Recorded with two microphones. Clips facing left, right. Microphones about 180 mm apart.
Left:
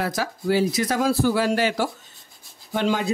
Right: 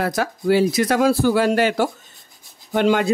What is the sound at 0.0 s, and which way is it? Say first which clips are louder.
Speech: right 4 dB; 55° right (ahead or behind).